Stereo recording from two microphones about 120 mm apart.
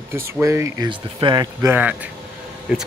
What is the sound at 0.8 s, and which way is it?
Speech, 40° right (ahead or behind).